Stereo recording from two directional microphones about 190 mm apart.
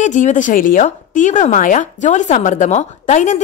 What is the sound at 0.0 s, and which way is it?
Speech, 40° left (ahead or behind).